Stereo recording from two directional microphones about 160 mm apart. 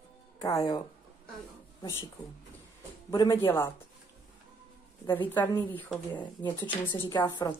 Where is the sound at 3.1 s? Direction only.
25° left (ahead or behind).